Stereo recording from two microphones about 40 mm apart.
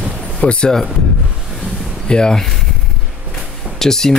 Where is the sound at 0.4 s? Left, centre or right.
Left.